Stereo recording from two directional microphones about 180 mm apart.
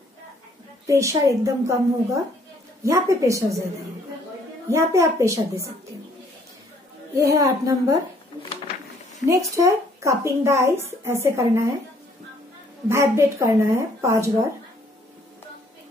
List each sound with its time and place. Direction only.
0.8 s a woman's voice: 15° right (ahead or behind)
4.7 s a woman's voice: 15° right (ahead or behind)
7.2 s a woman's voice: 20° right (ahead or behind)
9.2 s a woman's voice: 20° right (ahead or behind)
12.8 s a woman's voice: 15° right (ahead or behind)